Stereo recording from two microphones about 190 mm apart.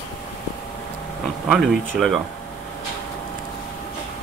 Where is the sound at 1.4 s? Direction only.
Centre (ahead or behind).